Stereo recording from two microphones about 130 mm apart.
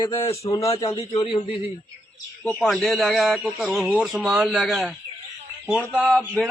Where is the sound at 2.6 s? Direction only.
Centre (ahead or behind).